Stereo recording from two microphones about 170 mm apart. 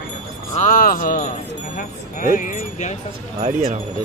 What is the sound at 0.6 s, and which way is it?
Speech, 50° left (ahead or behind).